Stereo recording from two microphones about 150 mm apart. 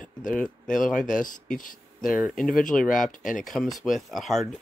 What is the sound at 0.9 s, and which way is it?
Speech, 60° left (ahead or behind).